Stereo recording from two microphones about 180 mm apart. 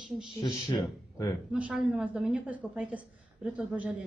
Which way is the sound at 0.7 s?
15° left (ahead or behind).